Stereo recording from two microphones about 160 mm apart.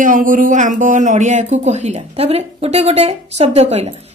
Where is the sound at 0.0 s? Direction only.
55° right (ahead or behind).